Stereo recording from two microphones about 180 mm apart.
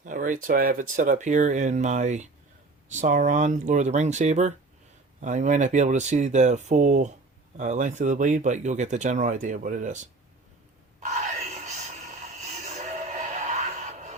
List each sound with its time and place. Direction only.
0.0 s speech: 45° right (ahead or behind)
11.0 s a sound: 40° right (ahead or behind)
12.6 s music: 40° right (ahead or behind)